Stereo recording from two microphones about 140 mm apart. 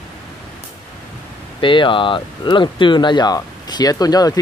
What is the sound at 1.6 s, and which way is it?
Speech, 35° left (ahead or behind).